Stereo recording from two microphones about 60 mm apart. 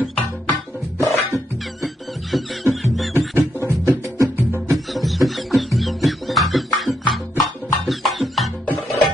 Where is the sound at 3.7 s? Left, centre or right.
Right.